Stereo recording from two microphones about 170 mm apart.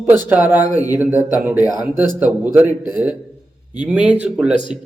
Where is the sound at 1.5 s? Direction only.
20° left (ahead or behind).